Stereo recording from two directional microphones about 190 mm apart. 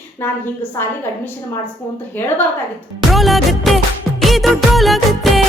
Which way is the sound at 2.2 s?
10° left (ahead or behind).